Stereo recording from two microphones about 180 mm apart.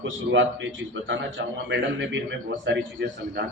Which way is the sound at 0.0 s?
90° right.